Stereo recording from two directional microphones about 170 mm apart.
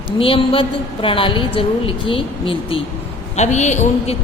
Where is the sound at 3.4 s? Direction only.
45° left (ahead or behind).